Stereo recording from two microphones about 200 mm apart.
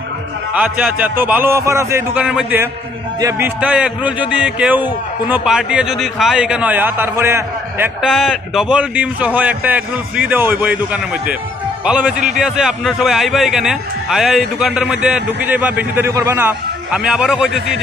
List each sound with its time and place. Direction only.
0.5 s a man's voice: 5° right (ahead or behind)